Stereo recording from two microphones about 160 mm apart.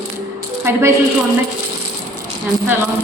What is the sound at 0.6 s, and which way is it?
Speech, 15° right (ahead or behind).